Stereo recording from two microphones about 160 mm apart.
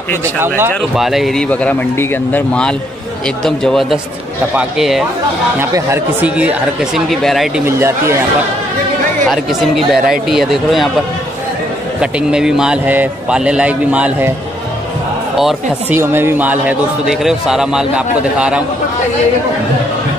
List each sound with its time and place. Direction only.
0.2 s a man's voice: 15° right (ahead or behind)
0.7 s a man's voice: centre (ahead or behind)
5.6 s a man's voice: 15° right (ahead or behind); by 7.6 s centre (ahead or behind)
7.6 s a man's voice: 15° right (ahead or behind)
9.3 s a man's voice: centre (ahead or behind)
12.0 s a man's voice: 5° right (ahead or behind)
15.3 s a man's voice: centre (ahead or behind)
16.0 s a man's voice: 15° right (ahead or behind)